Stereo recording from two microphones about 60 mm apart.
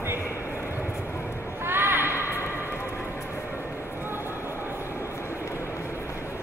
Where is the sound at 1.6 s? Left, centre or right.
Right.